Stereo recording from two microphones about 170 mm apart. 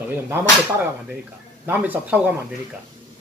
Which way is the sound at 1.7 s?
10° right (ahead or behind).